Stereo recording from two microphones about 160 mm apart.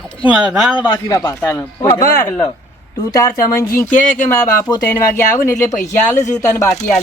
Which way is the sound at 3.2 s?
15° left (ahead or behind).